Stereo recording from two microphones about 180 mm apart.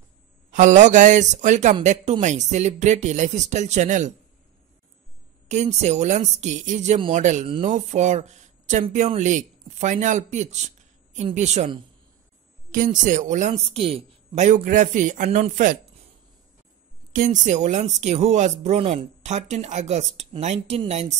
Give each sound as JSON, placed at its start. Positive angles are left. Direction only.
{"t": 0.5, "sound": "speech", "side_deg": -45}
{"t": 5.5, "sound": "speech", "side_deg": -40}
{"t": 17.1, "sound": "speech", "side_deg": -45}